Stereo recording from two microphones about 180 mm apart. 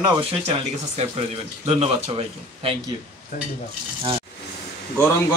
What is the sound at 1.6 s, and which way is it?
Speech, 35° right (ahead or behind).